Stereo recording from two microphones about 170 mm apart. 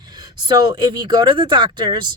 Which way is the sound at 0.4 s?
25° right (ahead or behind).